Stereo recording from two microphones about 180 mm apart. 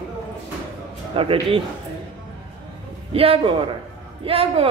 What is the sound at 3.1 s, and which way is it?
A man's voice, 30° right (ahead or behind).